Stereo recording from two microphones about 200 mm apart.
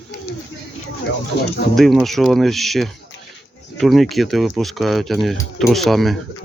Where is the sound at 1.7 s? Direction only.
Centre (ahead or behind).